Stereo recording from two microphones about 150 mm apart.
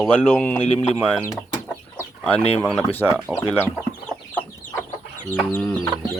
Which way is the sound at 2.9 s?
15° left (ahead or behind).